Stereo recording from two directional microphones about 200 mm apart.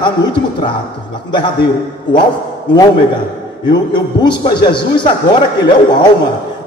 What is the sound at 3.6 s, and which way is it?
A man's voice, 20° left (ahead or behind).